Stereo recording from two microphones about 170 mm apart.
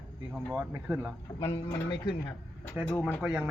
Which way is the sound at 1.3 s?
15° left (ahead or behind).